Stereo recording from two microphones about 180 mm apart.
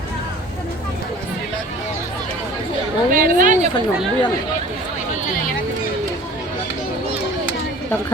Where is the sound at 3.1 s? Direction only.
50° right (ahead or behind).